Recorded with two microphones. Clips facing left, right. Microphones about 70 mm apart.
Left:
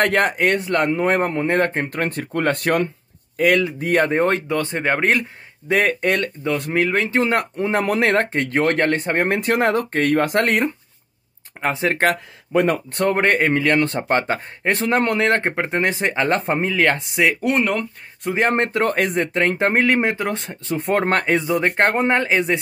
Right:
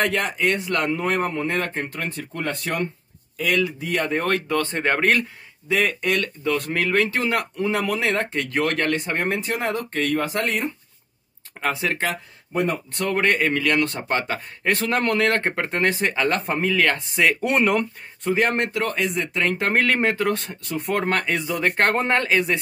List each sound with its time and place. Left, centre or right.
0.0 s speech: left
0.7 s speech: left
3.3 s speech: left
4.1 s speech: left
5.7 s speech: left
7.3 s speech: left
11.6 s speech: left
12.0 s speech: left
12.9 s speech: left; by 17.4 s centre
17.4 s speech: centre
18.3 s speech: left
18.7 s speech: left
19.3 s speech: left